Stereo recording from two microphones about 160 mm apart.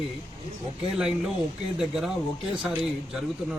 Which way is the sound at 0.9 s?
Centre (ahead or behind).